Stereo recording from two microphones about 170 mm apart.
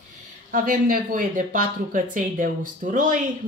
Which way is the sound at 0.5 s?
55° right (ahead or behind).